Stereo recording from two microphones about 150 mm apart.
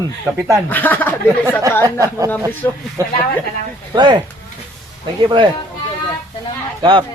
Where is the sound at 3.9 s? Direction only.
35° right (ahead or behind).